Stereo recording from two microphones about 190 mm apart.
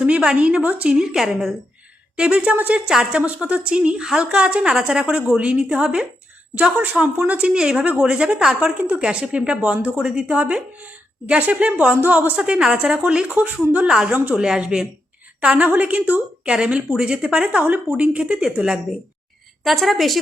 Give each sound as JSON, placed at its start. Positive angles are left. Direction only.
{"t": 0.0, "sound": "speech", "side_deg": -5}